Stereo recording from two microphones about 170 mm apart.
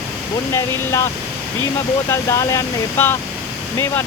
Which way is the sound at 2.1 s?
15° left (ahead or behind).